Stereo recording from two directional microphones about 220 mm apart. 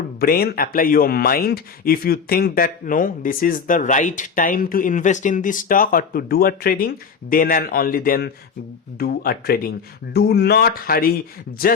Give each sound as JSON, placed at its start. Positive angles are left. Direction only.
{"t": 0.2, "sound": "speech", "side_deg": 45}